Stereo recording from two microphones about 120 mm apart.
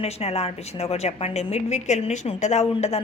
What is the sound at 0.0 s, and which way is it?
A woman's voice, 60° left (ahead or behind).